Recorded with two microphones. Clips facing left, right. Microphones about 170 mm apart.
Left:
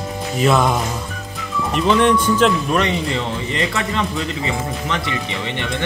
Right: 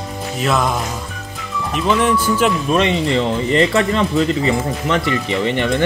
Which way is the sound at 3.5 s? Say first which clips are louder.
Right 7 dB; 35° right (ahead or behind).